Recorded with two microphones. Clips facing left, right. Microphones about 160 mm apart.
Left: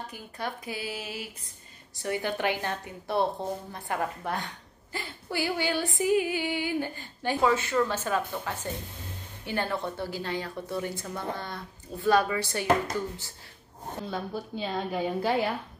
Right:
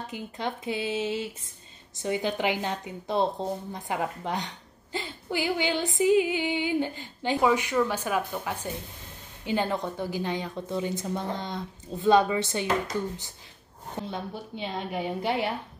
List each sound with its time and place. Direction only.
0.0 s female singing: 20° right (ahead or behind)
2.0 s a woman's voice: 20° right (ahead or behind)
4.9 s female singing: 20° right (ahead or behind)
14.1 s female singing: 20° right (ahead or behind)